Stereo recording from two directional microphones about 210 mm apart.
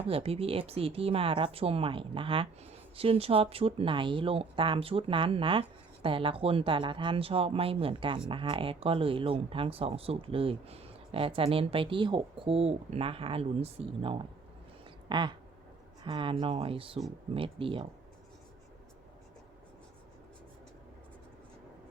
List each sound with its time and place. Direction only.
0.0 s speech: 25° right (ahead or behind)